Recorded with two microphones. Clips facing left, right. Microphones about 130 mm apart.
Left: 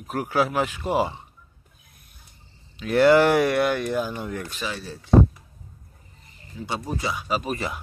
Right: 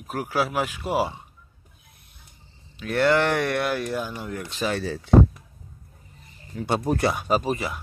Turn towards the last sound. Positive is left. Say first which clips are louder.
# right 4 dB
turn(degrees=-50)  # may be behind; listen again after turning